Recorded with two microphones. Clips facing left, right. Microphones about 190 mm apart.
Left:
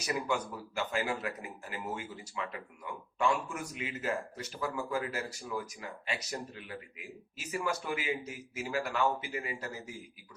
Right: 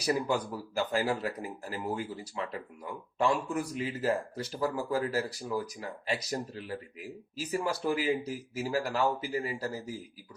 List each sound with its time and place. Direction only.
0.0 s a man's voice: 35° right (ahead or behind)